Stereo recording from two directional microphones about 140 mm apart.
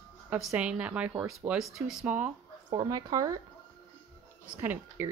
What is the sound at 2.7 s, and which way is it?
Speech, 30° right (ahead or behind).